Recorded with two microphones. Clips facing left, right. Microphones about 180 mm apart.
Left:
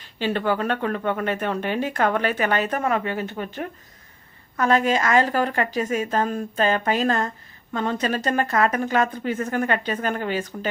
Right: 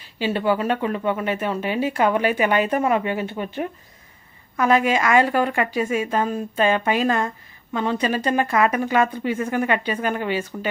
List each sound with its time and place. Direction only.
0.0 s speech: 10° right (ahead or behind)